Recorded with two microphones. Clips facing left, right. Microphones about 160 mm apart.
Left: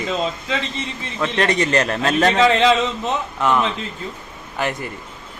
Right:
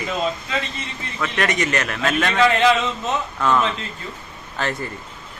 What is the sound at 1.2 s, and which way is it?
A man's voice, 30° left (ahead or behind).